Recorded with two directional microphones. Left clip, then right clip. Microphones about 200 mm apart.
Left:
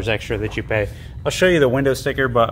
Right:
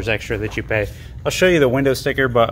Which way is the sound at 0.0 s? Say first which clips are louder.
Even; 5° right (ahead or behind).